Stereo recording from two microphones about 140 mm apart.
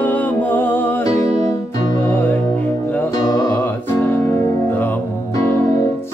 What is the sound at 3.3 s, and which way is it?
Music, 25° left (ahead or behind).